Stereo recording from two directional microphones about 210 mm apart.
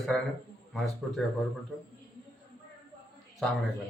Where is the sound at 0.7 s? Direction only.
Centre (ahead or behind).